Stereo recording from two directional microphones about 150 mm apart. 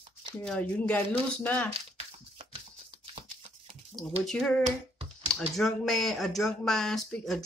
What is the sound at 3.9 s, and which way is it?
Speech, 5° left (ahead or behind).